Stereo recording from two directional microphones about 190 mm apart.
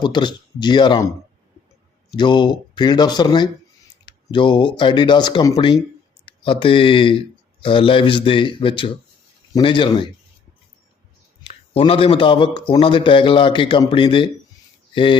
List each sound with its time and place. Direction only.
0.0 s speech: 25° left (ahead or behind)
11.4 s speech: 30° left (ahead or behind)